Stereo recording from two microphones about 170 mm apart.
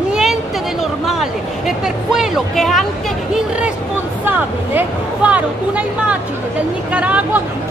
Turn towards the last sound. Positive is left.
turn(degrees=-10)  # may be behind; listen again after turning